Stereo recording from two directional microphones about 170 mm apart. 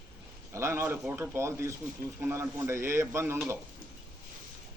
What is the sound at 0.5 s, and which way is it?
A man's voice, 15° right (ahead or behind).